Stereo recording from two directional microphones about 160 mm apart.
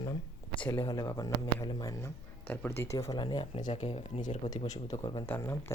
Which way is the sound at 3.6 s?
40° left (ahead or behind).